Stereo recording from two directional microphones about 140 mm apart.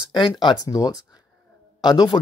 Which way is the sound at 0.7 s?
25° left (ahead or behind).